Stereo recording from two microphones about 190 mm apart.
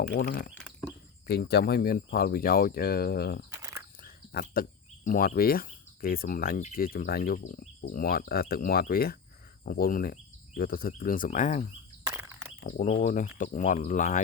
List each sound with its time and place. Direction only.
0.1 s speech: 50° left (ahead or behind)
3.5 s a sound: 15° right (ahead or behind)
4.0 s speech: 50° left (ahead or behind)